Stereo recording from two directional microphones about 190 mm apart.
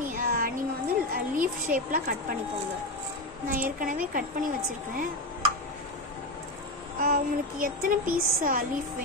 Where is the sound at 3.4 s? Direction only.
45° right (ahead or behind).